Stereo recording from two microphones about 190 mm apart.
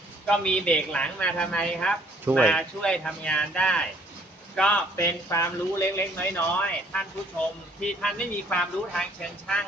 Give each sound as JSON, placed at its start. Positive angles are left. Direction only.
{"t": 0.3, "sound": "a man's voice", "side_deg": 5}
{"t": 4.9, "sound": "a man's voice", "side_deg": 15}